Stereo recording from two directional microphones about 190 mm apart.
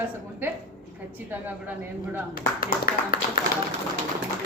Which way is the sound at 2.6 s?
50° left (ahead or behind).